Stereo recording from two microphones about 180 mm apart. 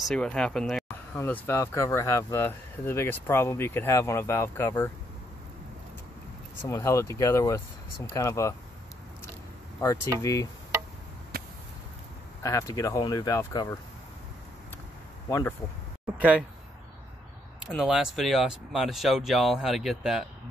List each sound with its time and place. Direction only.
0.0 s speech: 5° left (ahead or behind)
6.7 s speech: 15° left (ahead or behind)
9.8 s speech: 15° left (ahead or behind)
11.3 s a sound: 60° right (ahead or behind)
12.4 s speech: 20° left (ahead or behind)
15.2 s speech: 15° left (ahead or behind)
16.2 s speech: 5° right (ahead or behind)
17.6 s speech: centre (ahead or behind)